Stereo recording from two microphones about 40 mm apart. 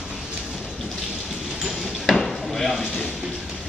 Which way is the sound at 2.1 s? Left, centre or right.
Centre.